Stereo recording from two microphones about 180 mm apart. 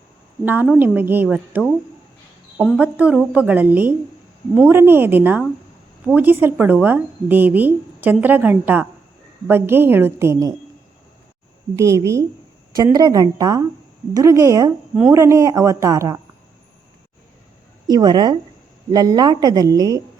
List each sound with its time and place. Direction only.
0.4 s a woman's voice: 10° right (ahead or behind)
2.7 s a woman's voice: 10° right (ahead or behind)
11.8 s a woman's voice: 15° right (ahead or behind)
17.8 s a woman's voice: 20° right (ahead or behind)